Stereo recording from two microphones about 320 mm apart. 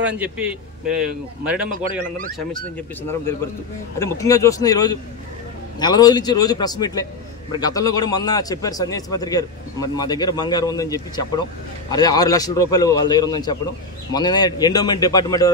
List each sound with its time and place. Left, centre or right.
0.0 s a man's voice: centre
1.7 s speech: right
2.3 s a man's voice: centre